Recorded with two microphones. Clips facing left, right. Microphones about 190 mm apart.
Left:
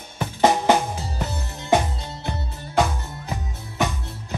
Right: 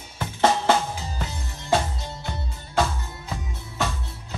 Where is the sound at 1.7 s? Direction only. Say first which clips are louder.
Left 3 dB; 15° left (ahead or behind).